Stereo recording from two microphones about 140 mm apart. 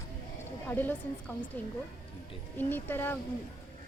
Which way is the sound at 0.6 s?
15° left (ahead or behind).